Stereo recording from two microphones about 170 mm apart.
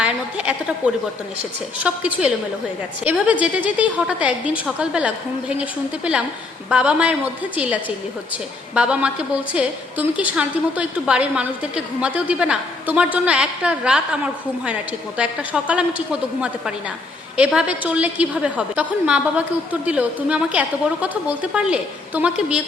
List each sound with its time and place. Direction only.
0.0 s a woman's voice: 5° right (ahead or behind)
6.7 s a woman's voice: 5° right (ahead or behind)
15.2 s a woman's voice: 5° right (ahead or behind)